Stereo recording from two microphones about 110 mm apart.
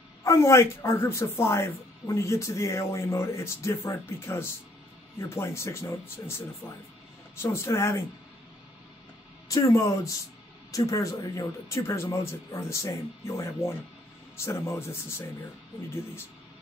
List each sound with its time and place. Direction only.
0.2 s speech: 25° left (ahead or behind)
6.6 s speech: 10° right (ahead or behind)
7.4 s speech: 25° left (ahead or behind)
9.5 s speech: 30° left (ahead or behind)